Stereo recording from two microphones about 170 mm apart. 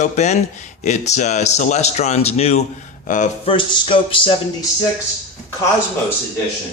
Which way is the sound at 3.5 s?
30° left (ahead or behind).